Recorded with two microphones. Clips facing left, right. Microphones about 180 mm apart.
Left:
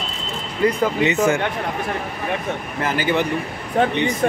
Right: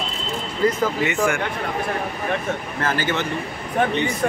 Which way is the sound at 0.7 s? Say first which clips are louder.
Left 3 dB; 20° left (ahead or behind).